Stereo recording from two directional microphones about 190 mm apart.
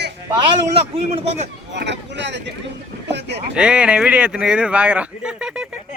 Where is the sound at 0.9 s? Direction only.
30° right (ahead or behind).